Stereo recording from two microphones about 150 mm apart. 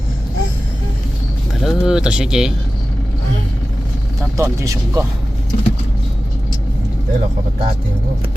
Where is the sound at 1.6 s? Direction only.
Centre (ahead or behind).